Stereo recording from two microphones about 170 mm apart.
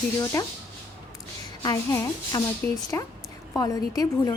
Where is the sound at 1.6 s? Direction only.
20° left (ahead or behind).